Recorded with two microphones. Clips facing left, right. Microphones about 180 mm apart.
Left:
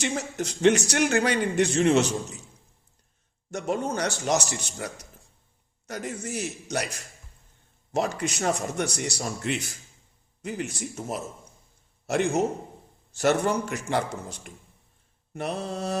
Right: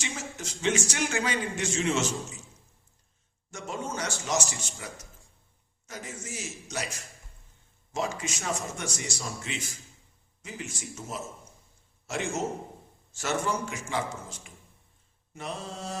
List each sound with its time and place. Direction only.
0.0 s speech: 60° left (ahead or behind)
3.5 s speech: 60° left (ahead or behind)